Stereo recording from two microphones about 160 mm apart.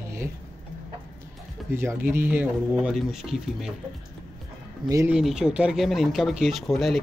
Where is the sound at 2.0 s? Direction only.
10° right (ahead or behind).